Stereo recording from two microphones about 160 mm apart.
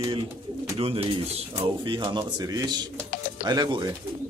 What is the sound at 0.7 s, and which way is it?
Speech, 35° right (ahead or behind).